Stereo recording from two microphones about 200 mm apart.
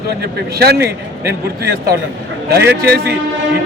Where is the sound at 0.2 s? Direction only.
50° right (ahead or behind).